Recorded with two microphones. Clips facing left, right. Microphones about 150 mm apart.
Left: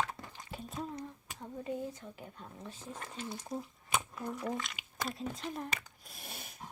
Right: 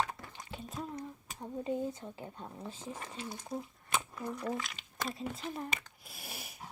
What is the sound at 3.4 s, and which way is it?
Speech, 5° left (ahead or behind).